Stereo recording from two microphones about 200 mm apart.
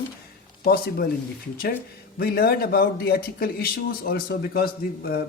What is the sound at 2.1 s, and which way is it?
A man's voice, 50° left (ahead or behind).